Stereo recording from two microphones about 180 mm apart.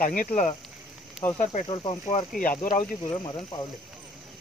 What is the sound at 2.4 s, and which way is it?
Speech, 50° left (ahead or behind).